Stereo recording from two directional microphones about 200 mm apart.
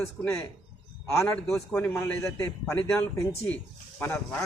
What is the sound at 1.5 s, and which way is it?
A man's voice, 5° left (ahead or behind).